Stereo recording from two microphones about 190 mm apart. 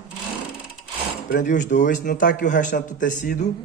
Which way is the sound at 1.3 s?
45° left (ahead or behind).